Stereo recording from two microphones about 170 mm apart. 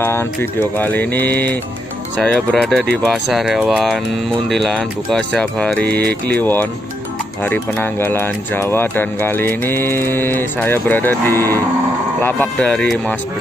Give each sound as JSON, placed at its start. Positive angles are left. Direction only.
{"t": 0.0, "sound": "speech", "side_deg": 15}
{"t": 5.9, "sound": "speech", "side_deg": -70}
{"t": 6.4, "sound": "speech", "side_deg": 10}